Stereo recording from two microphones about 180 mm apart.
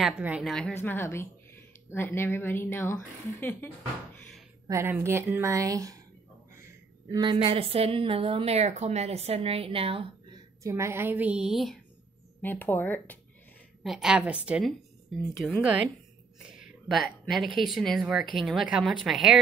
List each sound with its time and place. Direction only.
0.0 s speech: 5° right (ahead or behind)
0.8 s speech: 15° left (ahead or behind)
4.6 s speech: 15° right (ahead or behind)
7.1 s a woman's voice: 25° right (ahead or behind)
10.6 s speech: 15° right (ahead or behind); by 11.8 s centre (ahead or behind)
12.4 s speech: 10° left (ahead or behind)
13.8 s speech: 5° right (ahead or behind)